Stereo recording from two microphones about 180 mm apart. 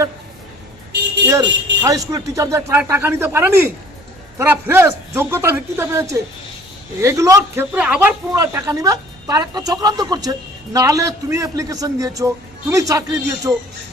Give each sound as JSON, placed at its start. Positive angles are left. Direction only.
{"t": 1.3, "sound": "speech", "side_deg": -20}
{"t": 8.3, "sound": "speech", "side_deg": -20}